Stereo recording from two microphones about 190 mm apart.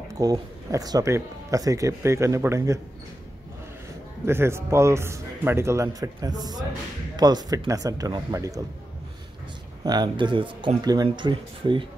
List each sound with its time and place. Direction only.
0.1 s speech: 15° right (ahead or behind)
4.3 s speech: 15° right (ahead or behind)
9.8 s speech: 20° right (ahead or behind)